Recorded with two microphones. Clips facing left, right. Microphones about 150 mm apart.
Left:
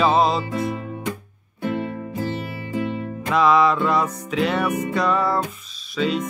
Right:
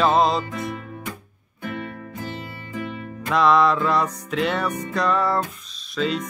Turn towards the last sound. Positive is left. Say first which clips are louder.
# left 2 dB
turn(degrees=0)  # may be behind; listen again after turning